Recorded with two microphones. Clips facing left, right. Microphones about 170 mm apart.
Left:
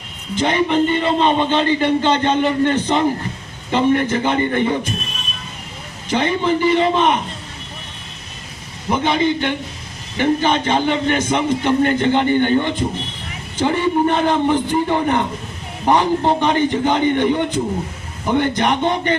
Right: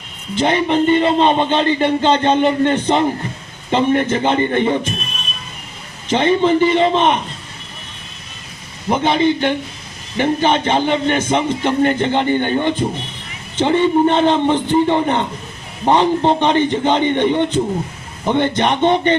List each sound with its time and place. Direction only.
0.3 s speech: 20° right (ahead or behind)
6.1 s speech: 20° right (ahead or behind)
8.9 s speech: 20° right (ahead or behind)